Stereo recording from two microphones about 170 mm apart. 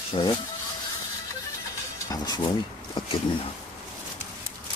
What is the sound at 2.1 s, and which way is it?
Speech, 20° left (ahead or behind).